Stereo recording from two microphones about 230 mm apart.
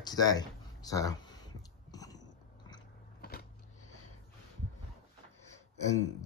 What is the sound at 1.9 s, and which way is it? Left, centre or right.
Biting, centre.